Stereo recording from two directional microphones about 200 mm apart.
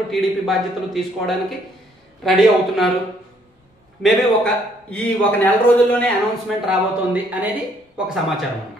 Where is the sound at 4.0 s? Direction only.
Centre (ahead or behind).